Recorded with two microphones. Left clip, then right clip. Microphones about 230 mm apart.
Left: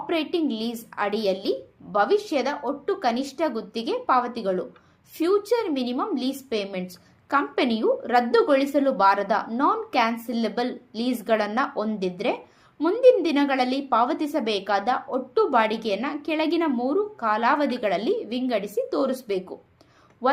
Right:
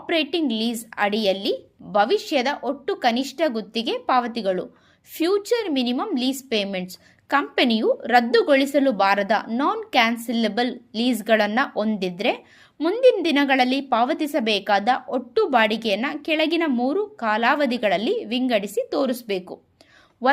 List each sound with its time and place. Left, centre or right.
0.1 s a woman's voice: right